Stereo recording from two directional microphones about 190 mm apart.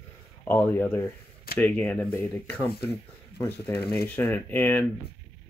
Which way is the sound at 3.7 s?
55° left (ahead or behind).